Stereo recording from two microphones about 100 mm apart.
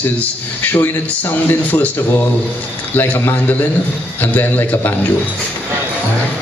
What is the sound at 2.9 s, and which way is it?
A man's voice, 20° left (ahead or behind).